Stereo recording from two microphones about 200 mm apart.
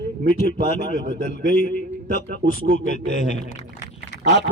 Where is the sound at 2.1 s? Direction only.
45° left (ahead or behind).